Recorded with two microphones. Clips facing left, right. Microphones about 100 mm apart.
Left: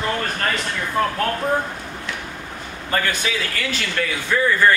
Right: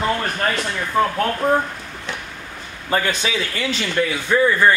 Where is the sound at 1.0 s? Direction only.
10° right (ahead or behind).